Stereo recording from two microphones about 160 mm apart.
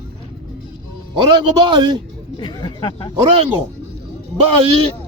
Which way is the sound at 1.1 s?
30° right (ahead or behind).